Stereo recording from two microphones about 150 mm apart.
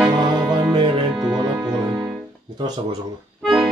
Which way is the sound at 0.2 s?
25° right (ahead or behind).